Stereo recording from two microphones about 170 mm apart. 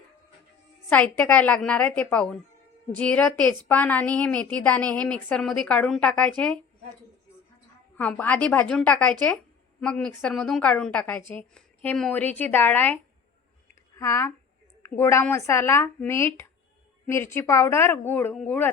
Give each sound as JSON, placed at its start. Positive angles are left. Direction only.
{"t": 0.9, "sound": "a woman's voice", "side_deg": 10}
{"t": 7.9, "sound": "a woman's voice", "side_deg": 10}